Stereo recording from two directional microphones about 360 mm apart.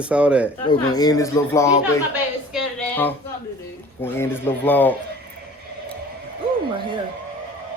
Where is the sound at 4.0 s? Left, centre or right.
Centre.